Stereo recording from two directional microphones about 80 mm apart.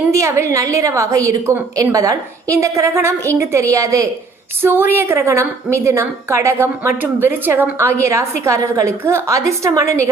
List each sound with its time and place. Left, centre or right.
0.1 s a woman's voice: right
4.6 s a woman's voice: right